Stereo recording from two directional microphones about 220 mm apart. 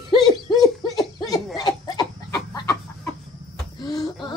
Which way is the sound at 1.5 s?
15° left (ahead or behind).